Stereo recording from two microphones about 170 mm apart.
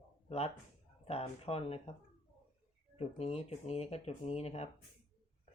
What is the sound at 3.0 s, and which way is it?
Speech, 35° left (ahead or behind).